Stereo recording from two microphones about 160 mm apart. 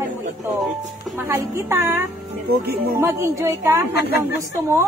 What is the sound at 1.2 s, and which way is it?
A woman's voice, 15° right (ahead or behind).